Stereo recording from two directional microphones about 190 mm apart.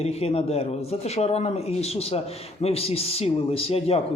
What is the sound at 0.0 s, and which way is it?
Speech, 35° left (ahead or behind).